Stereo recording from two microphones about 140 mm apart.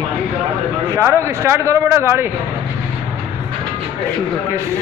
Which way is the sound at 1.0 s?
20° right (ahead or behind).